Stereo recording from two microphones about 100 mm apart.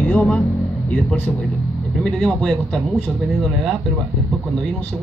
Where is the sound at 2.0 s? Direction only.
Centre (ahead or behind).